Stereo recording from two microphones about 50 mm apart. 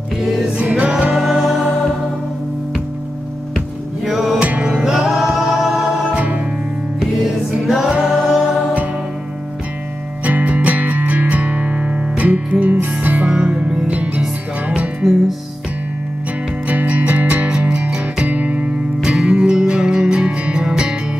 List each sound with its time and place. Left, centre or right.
0.6 s music: right
1.2 s music: centre
4.0 s music: centre
4.4 s music: right
4.7 s music: centre
6.1 s music: right
7.6 s music: centre
10.2 s music: right
13.3 s music: right
16.6 s music: right